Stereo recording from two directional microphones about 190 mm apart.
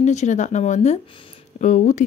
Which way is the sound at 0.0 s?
35° left (ahead or behind).